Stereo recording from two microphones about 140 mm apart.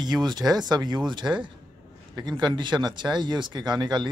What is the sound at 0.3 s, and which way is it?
Speech, 30° right (ahead or behind).